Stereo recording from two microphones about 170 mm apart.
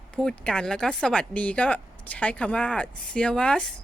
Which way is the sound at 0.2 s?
5° left (ahead or behind).